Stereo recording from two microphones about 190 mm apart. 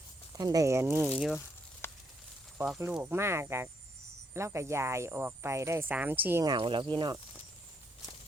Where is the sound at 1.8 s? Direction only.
15° left (ahead or behind).